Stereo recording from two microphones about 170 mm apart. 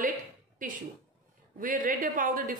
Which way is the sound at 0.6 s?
50° right (ahead or behind).